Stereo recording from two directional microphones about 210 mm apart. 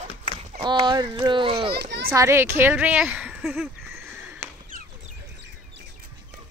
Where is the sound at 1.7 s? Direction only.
50° right (ahead or behind).